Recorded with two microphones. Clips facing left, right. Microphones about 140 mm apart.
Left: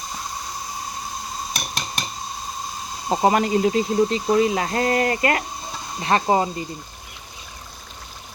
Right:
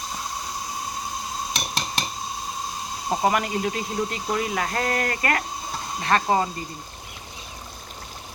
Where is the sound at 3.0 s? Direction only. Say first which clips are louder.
Left 4 dB; 25° left (ahead or behind).